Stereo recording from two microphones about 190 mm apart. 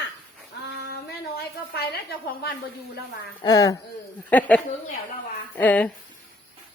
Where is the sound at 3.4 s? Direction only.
20° left (ahead or behind).